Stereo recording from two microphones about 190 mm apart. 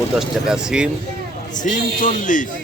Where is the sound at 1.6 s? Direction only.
45° left (ahead or behind).